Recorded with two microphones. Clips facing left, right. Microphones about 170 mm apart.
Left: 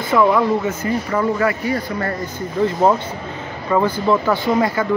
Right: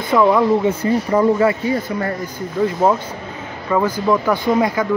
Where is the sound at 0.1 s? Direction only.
15° right (ahead or behind).